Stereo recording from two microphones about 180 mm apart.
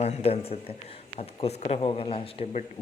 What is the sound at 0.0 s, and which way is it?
Speech, 35° left (ahead or behind).